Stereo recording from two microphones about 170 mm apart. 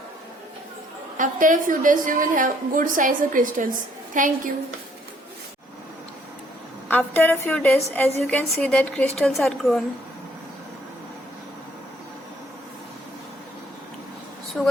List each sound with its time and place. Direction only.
1.1 s a woman's voice: 50° right (ahead or behind)
6.8 s a woman's voice: 10° left (ahead or behind)